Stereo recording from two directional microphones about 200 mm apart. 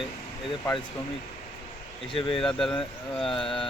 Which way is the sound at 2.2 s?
25° left (ahead or behind).